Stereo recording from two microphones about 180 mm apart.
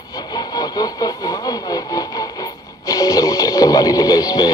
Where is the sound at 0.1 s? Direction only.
20° left (ahead or behind).